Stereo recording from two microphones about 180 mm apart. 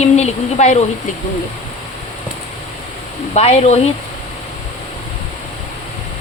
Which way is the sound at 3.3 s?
35° left (ahead or behind).